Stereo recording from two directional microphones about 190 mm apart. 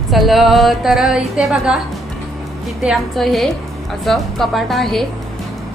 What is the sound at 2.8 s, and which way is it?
A woman's voice, centre (ahead or behind).